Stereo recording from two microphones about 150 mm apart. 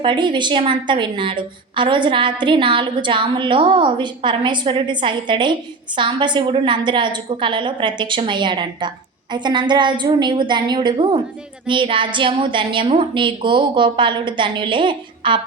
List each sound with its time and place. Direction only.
0.0 s a woman's voice: 30° right (ahead or behind)